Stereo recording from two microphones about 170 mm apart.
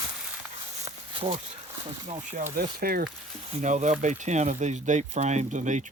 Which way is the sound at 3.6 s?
45° right (ahead or behind).